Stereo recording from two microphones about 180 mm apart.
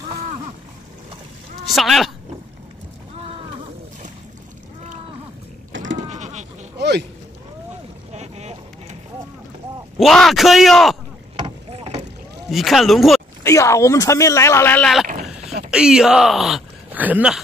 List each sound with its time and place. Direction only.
1.8 s speech: centre (ahead or behind)
5.9 s sheep: 40° right (ahead or behind)
6.8 s a sound: 70° right (ahead or behind)
8.1 s a sound: 40° right (ahead or behind)
9.9 s a man's voice: centre (ahead or behind)
11.3 s boat: 30° right (ahead or behind)
12.4 s speech: centre (ahead or behind)
13.4 s speech: 15° left (ahead or behind)
15.4 s a sound: 40° right (ahead or behind)
15.7 s speech: 5° right (ahead or behind)